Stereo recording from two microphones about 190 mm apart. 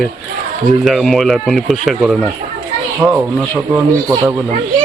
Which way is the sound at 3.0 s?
10° right (ahead or behind).